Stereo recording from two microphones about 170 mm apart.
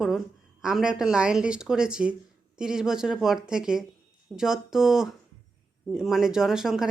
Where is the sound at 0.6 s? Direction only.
5° right (ahead or behind).